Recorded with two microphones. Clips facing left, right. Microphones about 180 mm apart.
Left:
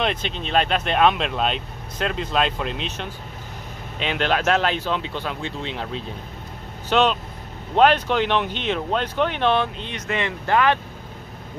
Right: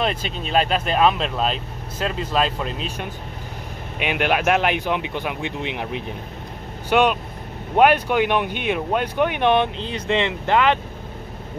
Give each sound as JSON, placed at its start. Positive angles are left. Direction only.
{"t": 0.0, "sound": "speech", "side_deg": -5}
{"t": 9.8, "sound": "speech", "side_deg": -30}